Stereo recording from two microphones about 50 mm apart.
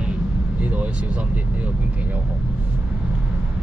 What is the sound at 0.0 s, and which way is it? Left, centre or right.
Vehicle, right.